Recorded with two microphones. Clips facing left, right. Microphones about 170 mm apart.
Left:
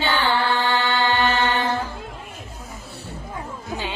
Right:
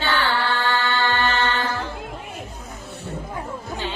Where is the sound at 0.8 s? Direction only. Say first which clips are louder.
Left 2 dB; 15° left (ahead or behind).